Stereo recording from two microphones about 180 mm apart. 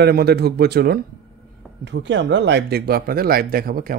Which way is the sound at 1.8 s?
85° right.